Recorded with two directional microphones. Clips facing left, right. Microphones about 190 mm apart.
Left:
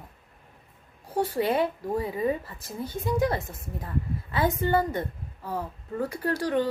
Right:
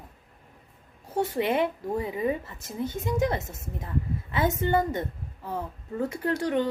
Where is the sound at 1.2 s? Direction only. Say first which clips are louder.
Even; 20° right (ahead or behind).